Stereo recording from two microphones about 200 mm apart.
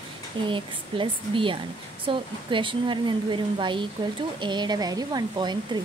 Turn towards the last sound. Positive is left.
turn(degrees=-20)  # may be behind; listen again after turning